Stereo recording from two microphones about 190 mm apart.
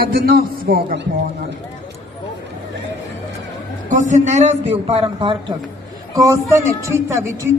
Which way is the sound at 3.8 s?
40° right (ahead or behind).